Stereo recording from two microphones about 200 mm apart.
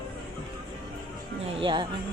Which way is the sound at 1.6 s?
25° right (ahead or behind).